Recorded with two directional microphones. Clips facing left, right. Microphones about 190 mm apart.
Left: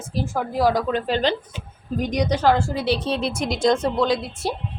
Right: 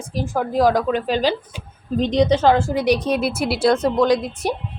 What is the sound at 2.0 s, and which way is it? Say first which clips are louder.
A woman's voice: right 6 dB; 25° right (ahead or behind).